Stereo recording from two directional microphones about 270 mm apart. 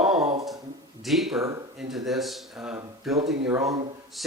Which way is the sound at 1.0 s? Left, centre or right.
Centre.